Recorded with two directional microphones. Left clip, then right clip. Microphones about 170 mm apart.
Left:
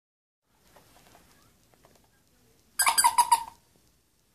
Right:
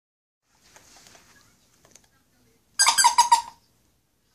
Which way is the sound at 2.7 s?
40° left (ahead or behind).